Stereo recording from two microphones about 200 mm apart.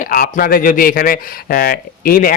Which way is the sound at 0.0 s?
45° left (ahead or behind).